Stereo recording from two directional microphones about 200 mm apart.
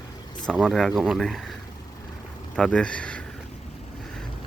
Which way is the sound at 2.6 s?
5° left (ahead or behind).